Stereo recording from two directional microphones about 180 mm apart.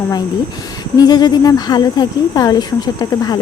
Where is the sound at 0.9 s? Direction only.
20° left (ahead or behind).